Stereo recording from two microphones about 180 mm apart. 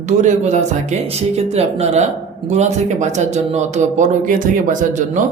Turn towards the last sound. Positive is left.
turn(degrees=-45)  # may be behind; listen again after turning